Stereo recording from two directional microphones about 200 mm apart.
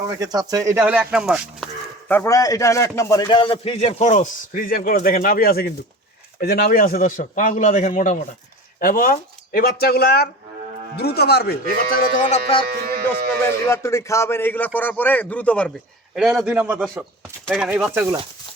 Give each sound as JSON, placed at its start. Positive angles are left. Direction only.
{"t": 0.0, "sound": "speech", "side_deg": -20}
{"t": 2.0, "sound": "a man's voice", "side_deg": 10}
{"t": 12.6, "sound": "speech", "side_deg": -50}
{"t": 13.4, "sound": "a man's voice", "side_deg": 15}